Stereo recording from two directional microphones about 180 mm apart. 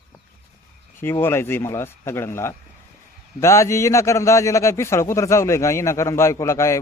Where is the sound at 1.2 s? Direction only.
15° left (ahead or behind).